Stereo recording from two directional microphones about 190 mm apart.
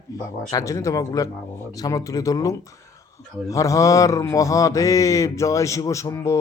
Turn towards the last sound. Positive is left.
turn(degrees=15)  # may be behind; listen again after turning